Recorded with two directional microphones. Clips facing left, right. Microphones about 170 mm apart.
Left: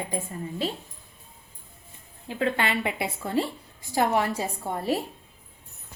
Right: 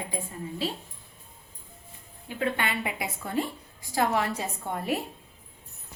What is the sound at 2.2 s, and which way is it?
A woman's voice, 25° left (ahead or behind).